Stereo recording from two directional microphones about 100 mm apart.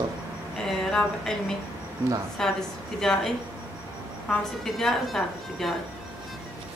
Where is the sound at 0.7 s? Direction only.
5° left (ahead or behind).